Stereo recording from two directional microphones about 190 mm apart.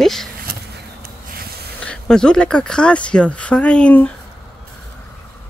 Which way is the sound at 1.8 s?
5° left (ahead or behind).